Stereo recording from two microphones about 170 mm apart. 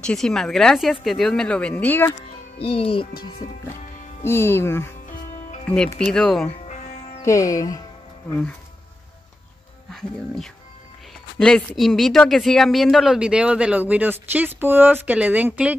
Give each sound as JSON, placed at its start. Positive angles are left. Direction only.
{"t": 0.0, "sound": "speech", "side_deg": 5}
{"t": 2.6, "sound": "speech", "side_deg": 35}
{"t": 4.2, "sound": "speech", "side_deg": 15}
{"t": 5.9, "sound": "speech", "side_deg": 5}
{"t": 7.2, "sound": "speech", "side_deg": 15}
{"t": 9.8, "sound": "speech", "side_deg": 0}